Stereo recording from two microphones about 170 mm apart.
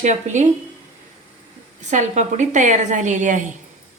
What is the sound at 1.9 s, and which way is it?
A woman's voice, 45° right (ahead or behind).